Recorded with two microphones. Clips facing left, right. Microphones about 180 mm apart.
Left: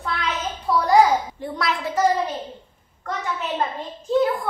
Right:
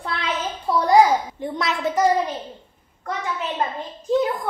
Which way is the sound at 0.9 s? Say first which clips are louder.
Right 1 dB; 20° right (ahead or behind).